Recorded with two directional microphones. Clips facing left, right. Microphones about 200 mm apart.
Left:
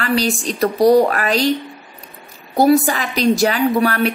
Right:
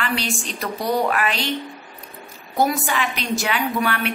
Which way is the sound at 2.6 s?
35° left (ahead or behind).